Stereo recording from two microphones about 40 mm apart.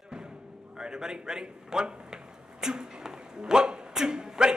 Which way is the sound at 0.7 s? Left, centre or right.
Centre.